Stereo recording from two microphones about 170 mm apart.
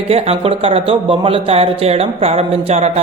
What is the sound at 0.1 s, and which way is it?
Speech, 35° right (ahead or behind).